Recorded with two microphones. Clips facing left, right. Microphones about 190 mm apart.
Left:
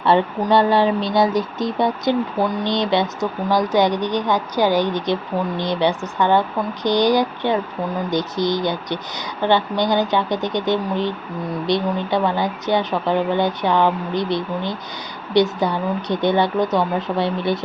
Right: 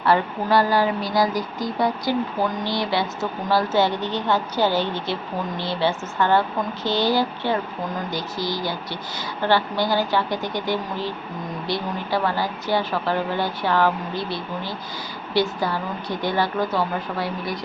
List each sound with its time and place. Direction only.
0.0 s a woman's voice: 25° left (ahead or behind)